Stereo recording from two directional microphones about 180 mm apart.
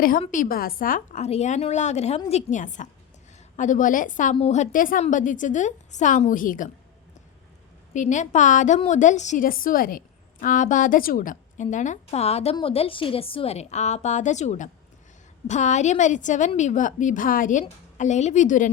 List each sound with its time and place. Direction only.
0.0 s a woman's voice: 50° left (ahead or behind)
7.9 s a woman's voice: 45° left (ahead or behind)